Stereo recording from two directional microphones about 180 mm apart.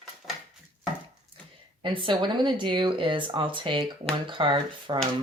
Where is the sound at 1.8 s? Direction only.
25° right (ahead or behind).